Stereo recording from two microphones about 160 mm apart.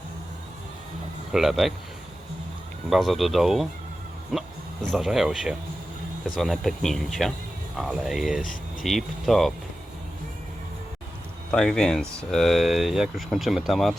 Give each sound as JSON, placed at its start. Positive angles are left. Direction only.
{"t": 1.3, "sound": "speech", "side_deg": 0}
{"t": 2.9, "sound": "speech", "side_deg": 0}
{"t": 11.5, "sound": "speech", "side_deg": 5}